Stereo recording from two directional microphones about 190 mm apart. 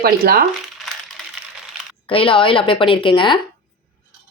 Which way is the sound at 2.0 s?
30° left (ahead or behind).